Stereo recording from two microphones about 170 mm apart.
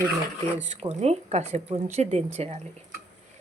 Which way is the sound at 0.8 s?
40° right (ahead or behind).